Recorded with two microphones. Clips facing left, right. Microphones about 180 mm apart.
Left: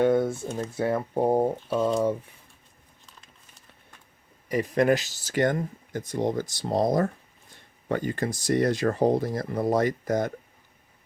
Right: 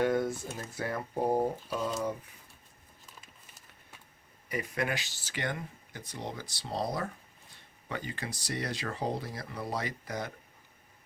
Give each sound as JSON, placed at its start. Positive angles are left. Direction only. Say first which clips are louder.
{"t": 0.0, "sound": "speech", "louder": "left 7 dB", "side_deg": 25}
{"t": 4.4, "sound": "speech", "louder": "left 11 dB", "side_deg": 40}